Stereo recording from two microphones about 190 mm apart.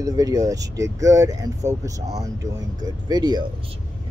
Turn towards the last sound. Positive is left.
turn(degrees=-20)  # may be behind; listen again after turning